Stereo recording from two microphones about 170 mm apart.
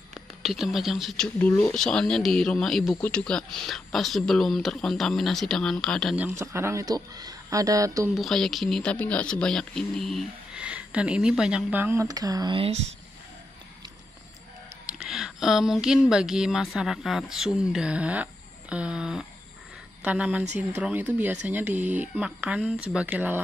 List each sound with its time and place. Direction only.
0.4 s speech: centre (ahead or behind)
6.1 s speech: 15° right (ahead or behind)
8.1 s speech: centre (ahead or behind); by 12.7 s 30° right (ahead or behind)
14.9 s speech: 5° right (ahead or behind)